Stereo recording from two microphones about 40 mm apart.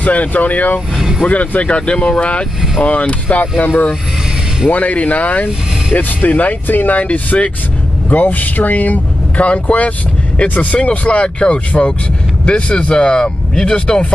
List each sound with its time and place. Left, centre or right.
0.0 s speech: left
0.9 s vehicle: centre
1.2 s speech: left